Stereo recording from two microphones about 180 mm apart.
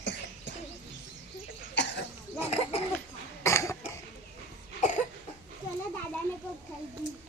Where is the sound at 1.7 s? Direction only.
75° left (ahead or behind).